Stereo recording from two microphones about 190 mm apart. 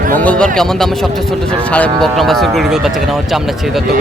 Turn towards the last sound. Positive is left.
turn(degrees=0)  # may be behind; listen again after turning